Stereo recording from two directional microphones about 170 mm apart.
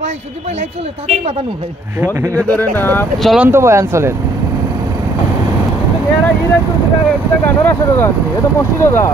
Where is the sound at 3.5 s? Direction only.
15° right (ahead or behind).